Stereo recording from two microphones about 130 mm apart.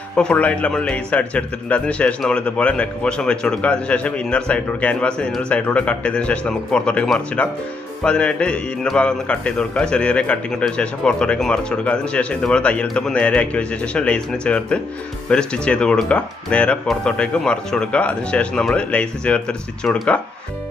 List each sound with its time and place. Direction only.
0.2 s speech: 10° left (ahead or behind)